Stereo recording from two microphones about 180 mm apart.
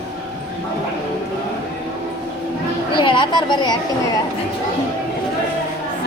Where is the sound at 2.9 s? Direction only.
25° left (ahead or behind).